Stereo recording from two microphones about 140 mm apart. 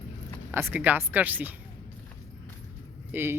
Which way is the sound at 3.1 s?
15° right (ahead or behind).